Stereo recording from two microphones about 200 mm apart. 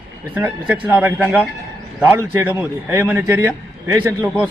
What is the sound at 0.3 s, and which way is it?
Speech, 10° right (ahead or behind).